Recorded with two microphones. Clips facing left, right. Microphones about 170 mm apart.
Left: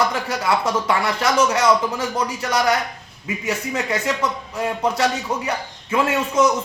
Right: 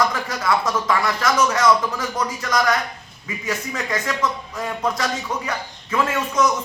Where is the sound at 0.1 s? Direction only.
30° left (ahead or behind).